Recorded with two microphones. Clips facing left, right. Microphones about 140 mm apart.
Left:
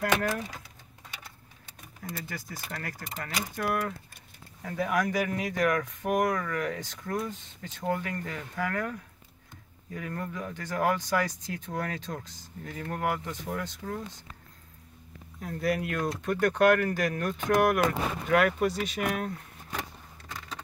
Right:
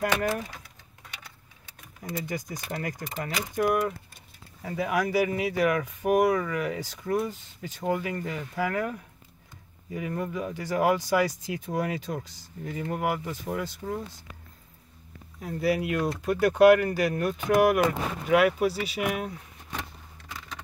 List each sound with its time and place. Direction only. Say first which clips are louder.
0.0 s speech: right 1 dB; 15° right (ahead or behind)
2.0 s speech: right 6 dB; 15° right (ahead or behind)
4.6 s speech: right 1 dB; 5° right (ahead or behind)
15.4 s speech: right 3 dB; 5° right (ahead or behind)